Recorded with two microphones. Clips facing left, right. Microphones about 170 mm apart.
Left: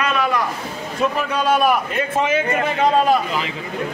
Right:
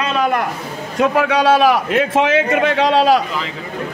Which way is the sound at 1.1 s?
90° right.